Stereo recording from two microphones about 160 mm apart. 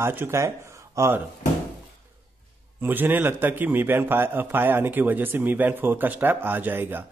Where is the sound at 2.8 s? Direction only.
10° right (ahead or behind).